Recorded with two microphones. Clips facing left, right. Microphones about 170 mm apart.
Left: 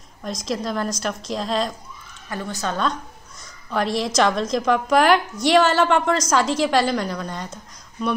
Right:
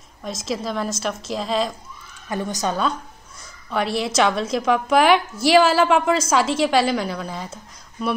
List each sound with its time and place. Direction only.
0.2 s a woman's voice: 5° right (ahead or behind)
2.2 s a woman's voice: 20° right (ahead or behind)
3.7 s a woman's voice: 5° right (ahead or behind)